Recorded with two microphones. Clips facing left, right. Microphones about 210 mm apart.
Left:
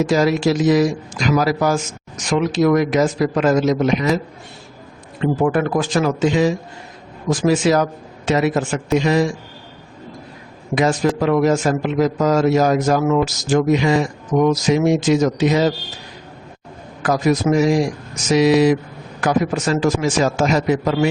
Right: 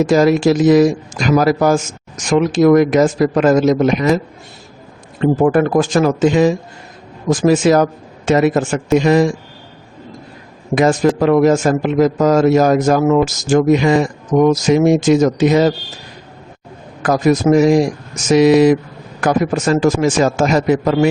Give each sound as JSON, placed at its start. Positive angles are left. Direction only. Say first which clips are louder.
{"t": 0.0, "sound": "speech", "louder": "right 5 dB", "side_deg": -50}
{"t": 5.2, "sound": "speech", "louder": "right 5 dB", "side_deg": -45}
{"t": 10.8, "sound": "speech", "louder": "right 4 dB", "side_deg": -50}
{"t": 17.0, "sound": "speech", "louder": "right 4 dB", "side_deg": -45}